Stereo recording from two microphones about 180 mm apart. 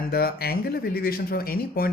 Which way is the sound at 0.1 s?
60° left (ahead or behind).